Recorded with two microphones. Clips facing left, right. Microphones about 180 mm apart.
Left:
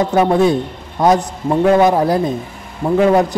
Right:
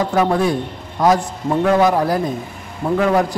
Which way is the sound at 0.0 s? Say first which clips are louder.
Left 4 dB; 25° left (ahead or behind).